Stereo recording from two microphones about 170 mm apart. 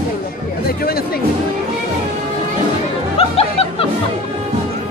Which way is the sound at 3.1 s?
35° left (ahead or behind).